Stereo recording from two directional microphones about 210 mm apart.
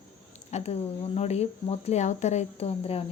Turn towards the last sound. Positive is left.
turn(degrees=30)  # may be behind; listen again after turning